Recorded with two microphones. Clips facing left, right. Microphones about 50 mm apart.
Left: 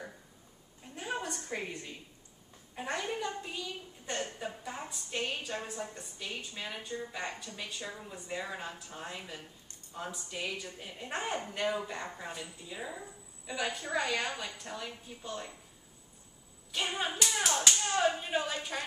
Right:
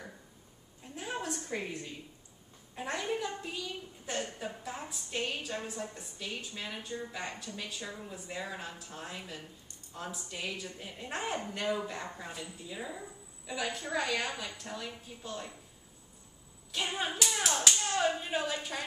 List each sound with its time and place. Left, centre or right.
0.9 s a sound: centre
2.7 s a woman's voice: centre
16.7 s a woman's voice: centre